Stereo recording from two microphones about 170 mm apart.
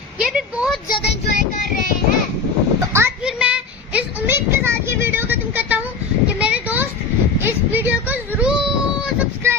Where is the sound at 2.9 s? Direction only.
15° right (ahead or behind).